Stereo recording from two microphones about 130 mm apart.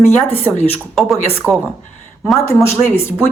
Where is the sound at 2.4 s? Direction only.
20° left (ahead or behind).